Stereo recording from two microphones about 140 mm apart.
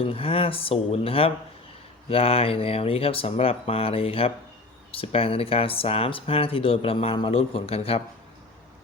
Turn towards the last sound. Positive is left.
turn(degrees=45)  # may be behind; listen again after turning